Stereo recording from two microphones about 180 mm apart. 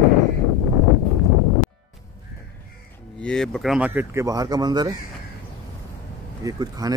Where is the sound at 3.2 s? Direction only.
5° left (ahead or behind); by 4.9 s 20° right (ahead or behind).